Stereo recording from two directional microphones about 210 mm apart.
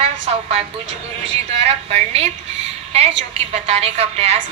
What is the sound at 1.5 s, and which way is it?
Speech, 30° right (ahead or behind).